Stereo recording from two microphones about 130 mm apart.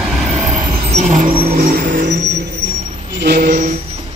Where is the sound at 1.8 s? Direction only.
90° right.